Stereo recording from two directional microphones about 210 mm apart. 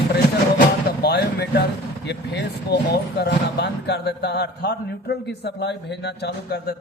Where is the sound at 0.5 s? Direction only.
50° left (ahead or behind).